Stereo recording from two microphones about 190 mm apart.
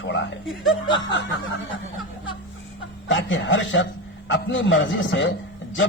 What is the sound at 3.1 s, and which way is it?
A man's voice, 80° left.